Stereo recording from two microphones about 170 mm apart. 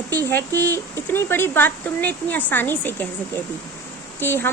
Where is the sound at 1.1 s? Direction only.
15° left (ahead or behind).